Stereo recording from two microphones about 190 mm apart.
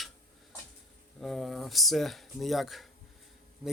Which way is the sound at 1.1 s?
Centre (ahead or behind).